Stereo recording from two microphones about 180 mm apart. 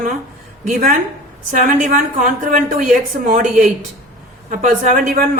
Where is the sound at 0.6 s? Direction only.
45° right (ahead or behind).